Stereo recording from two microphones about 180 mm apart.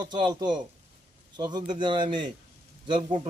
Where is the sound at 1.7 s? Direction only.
25° right (ahead or behind).